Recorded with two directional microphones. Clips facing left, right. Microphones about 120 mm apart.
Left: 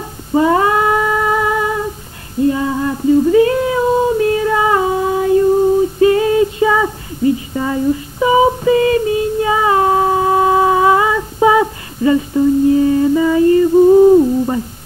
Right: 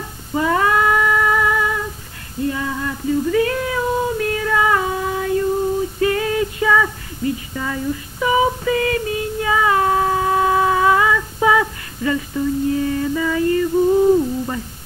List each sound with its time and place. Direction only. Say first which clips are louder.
0.3 s cat: left 5 dB; 25° left (ahead or behind)
2.5 s a sound: left 7 dB; 25° left (ahead or behind)
5.9 s female singing: left 7 dB; 25° left (ahead or behind)